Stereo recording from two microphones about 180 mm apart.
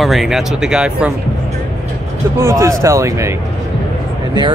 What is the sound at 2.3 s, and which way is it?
Speech, 15° right (ahead or behind).